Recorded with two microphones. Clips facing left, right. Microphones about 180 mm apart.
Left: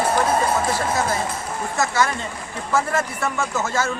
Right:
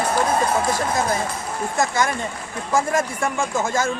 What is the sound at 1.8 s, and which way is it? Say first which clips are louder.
A man's voice: even; 15° right (ahead or behind).